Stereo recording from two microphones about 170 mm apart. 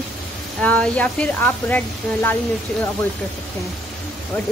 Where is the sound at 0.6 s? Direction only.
5° left (ahead or behind).